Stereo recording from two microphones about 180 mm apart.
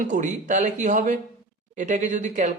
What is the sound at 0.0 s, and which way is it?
Speech, 45° right (ahead or behind).